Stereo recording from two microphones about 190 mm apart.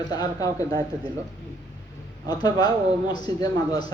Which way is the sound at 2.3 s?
20° left (ahead or behind).